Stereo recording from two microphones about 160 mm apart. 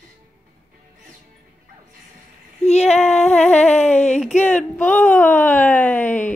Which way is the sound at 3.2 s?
10° left (ahead or behind).